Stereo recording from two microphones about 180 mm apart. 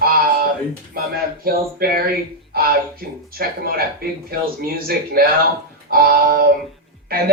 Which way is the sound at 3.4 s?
55° right (ahead or behind).